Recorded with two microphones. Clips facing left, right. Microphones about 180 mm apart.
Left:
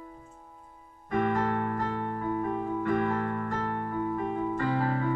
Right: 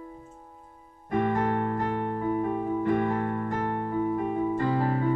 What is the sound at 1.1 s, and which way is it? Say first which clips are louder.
Music: right 2 dB; 25° right (ahead or behind).